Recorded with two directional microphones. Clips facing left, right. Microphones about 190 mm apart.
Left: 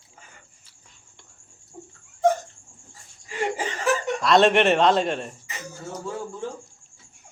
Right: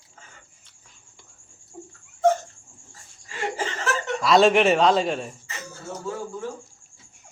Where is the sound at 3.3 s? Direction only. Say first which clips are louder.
Left 2 dB; 15° left (ahead or behind).